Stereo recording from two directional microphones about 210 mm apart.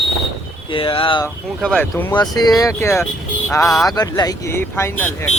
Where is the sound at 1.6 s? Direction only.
5° left (ahead or behind).